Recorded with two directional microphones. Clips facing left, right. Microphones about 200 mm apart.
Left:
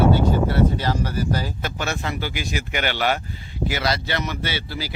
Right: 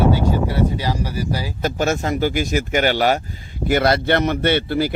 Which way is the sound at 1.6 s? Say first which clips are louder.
Right 7 dB; 45° right (ahead or behind).